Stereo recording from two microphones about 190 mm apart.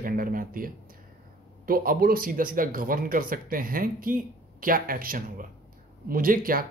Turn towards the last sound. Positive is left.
turn(degrees=-50)  # may be behind; listen again after turning